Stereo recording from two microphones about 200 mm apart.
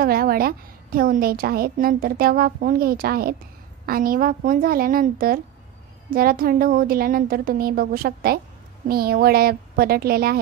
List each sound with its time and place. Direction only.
0.0 s a woman's voice: 50° right (ahead or behind)